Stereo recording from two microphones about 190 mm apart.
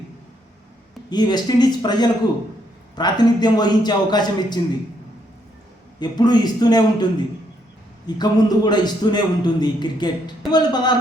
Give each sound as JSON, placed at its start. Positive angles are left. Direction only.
{"t": 1.1, "sound": "a man's voice", "side_deg": 20}
{"t": 6.0, "sound": "a man's voice", "side_deg": 20}